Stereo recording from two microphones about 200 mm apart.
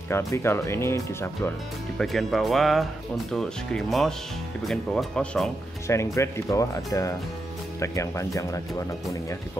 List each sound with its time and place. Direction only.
0.1 s speech: 10° left (ahead or behind)
2.0 s speech: centre (ahead or behind)